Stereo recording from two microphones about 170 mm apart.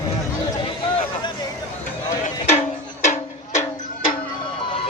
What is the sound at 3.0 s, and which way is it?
Music, 45° left (ahead or behind).